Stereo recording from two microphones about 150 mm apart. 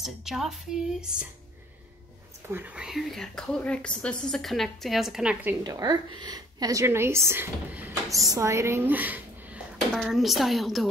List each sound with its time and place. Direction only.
0.0 s speech: centre (ahead or behind)
2.5 s speech: 10° right (ahead or behind)
5.6 s a woman's voice: 25° right (ahead or behind); by 10.9 s centre (ahead or behind)